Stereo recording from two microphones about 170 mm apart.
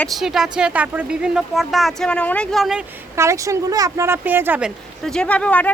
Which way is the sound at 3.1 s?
15° right (ahead or behind).